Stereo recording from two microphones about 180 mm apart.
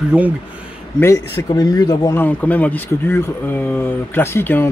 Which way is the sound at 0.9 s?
15° left (ahead or behind).